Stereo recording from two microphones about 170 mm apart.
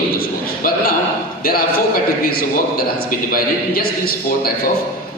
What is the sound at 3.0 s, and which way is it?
A man's voice, 60° left (ahead or behind).